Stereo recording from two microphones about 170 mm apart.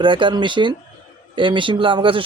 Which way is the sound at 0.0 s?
30° right (ahead or behind).